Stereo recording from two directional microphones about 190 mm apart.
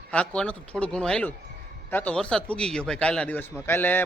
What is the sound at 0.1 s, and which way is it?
A man's voice, 5° left (ahead or behind).